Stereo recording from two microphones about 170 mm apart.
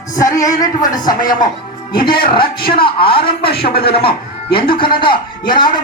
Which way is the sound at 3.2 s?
65° left (ahead or behind).